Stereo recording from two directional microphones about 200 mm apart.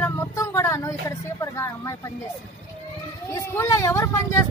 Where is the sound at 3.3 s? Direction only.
15° left (ahead or behind).